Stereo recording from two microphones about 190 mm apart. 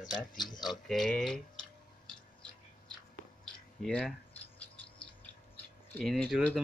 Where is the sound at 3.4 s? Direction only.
Centre (ahead or behind).